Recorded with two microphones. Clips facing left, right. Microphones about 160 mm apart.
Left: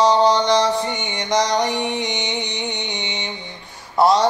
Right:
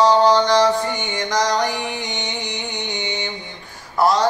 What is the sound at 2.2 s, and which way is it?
Music, 20° left (ahead or behind).